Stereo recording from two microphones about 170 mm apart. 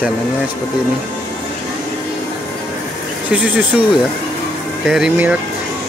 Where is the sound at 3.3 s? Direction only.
10° right (ahead or behind).